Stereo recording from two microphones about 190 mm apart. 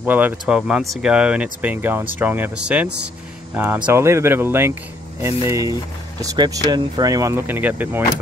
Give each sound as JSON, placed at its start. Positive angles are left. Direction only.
{"t": 0.0, "sound": "speech", "side_deg": -10}